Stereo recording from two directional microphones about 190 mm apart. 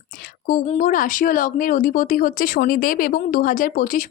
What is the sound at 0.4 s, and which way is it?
Speech, 45° left (ahead or behind).